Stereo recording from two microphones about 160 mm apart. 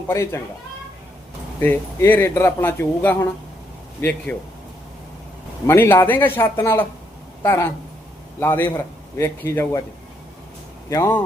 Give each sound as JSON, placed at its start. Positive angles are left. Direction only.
{"t": 0.1, "sound": "speech", "side_deg": 15}
{"t": 1.5, "sound": "speech", "side_deg": 15}
{"t": 4.3, "sound": "speech", "side_deg": 10}
{"t": 5.6, "sound": "speech", "side_deg": 15}
{"t": 10.8, "sound": "speech", "side_deg": 15}